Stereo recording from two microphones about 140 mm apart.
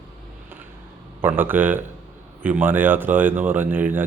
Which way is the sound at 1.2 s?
15° right (ahead or behind).